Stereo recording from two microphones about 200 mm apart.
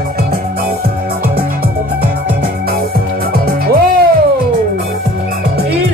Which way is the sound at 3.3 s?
50° right (ahead or behind).